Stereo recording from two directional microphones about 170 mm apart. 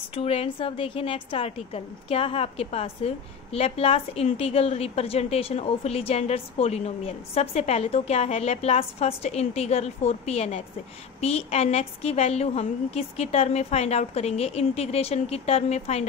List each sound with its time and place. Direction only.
0.1 s a woman's voice: 35° left (ahead or behind)